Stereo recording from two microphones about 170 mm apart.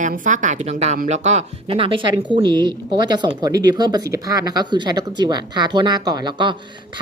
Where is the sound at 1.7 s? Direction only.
30° right (ahead or behind).